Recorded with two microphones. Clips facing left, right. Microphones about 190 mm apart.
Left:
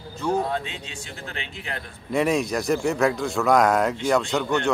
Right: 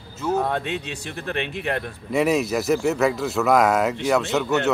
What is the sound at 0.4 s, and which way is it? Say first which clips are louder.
Speech: right 3 dB; 60° right (ahead or behind).